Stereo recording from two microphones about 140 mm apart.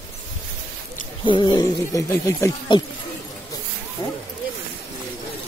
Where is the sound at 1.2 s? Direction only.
35° left (ahead or behind).